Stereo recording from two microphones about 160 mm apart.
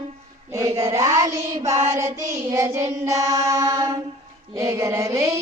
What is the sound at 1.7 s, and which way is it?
Child singing, 50° right (ahead or behind).